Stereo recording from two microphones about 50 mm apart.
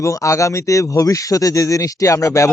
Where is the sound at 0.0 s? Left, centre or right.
Left.